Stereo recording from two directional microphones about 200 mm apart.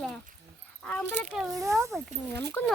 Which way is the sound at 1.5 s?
15° right (ahead or behind).